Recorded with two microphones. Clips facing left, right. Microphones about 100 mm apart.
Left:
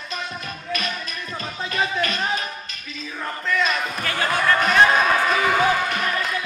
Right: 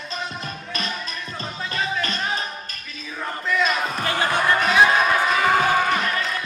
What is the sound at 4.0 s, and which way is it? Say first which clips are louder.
Basketball bounce: right 1 dB; 25° right (ahead or behind).